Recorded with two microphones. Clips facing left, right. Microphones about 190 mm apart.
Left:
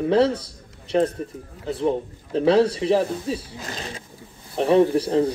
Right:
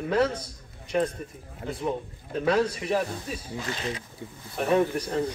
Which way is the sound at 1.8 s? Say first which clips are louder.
Left 8 dB; 30° left (ahead or behind).